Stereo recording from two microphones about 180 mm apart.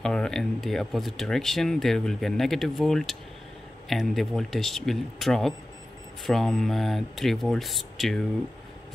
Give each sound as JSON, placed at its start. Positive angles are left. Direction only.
{"t": 0.0, "sound": "speech", "side_deg": 5}